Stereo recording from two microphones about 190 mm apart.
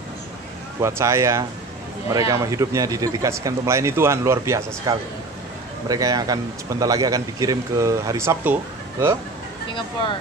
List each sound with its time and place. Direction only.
0.7 s a man's voice: 15° right (ahead or behind)